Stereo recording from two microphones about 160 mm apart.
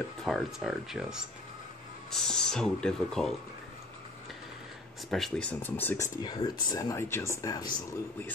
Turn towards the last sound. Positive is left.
turn(degrees=25)  # may be behind; listen again after turning